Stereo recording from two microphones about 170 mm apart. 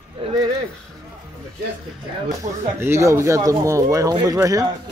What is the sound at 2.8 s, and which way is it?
Speech, 15° right (ahead or behind).